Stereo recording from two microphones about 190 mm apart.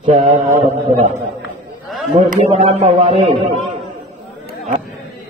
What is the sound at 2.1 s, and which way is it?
A man's voice, 35° right (ahead or behind).